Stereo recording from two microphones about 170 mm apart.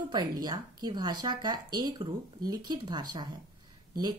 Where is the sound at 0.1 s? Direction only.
25° right (ahead or behind).